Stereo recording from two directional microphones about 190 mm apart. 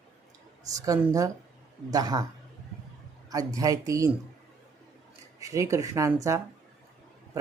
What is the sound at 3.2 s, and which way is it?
Speech, 20° right (ahead or behind).